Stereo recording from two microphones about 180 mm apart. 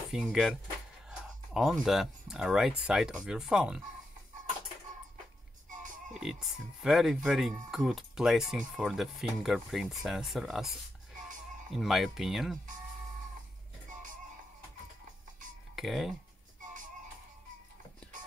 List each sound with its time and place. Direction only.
0.1 s speech: centre (ahead or behind)
5.7 s pig: 45° right (ahead or behind)
6.1 s speech: centre (ahead or behind)
11.7 s speech: centre (ahead or behind)
15.7 s speech: centre (ahead or behind)